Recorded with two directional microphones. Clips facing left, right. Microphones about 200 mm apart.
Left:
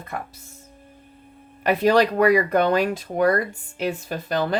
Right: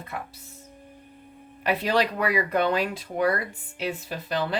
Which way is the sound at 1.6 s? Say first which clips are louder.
Left 6 dB; 45° left (ahead or behind).